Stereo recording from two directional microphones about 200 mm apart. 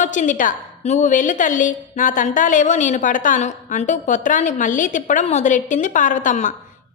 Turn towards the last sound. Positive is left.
turn(degrees=40)  # may be behind; listen again after turning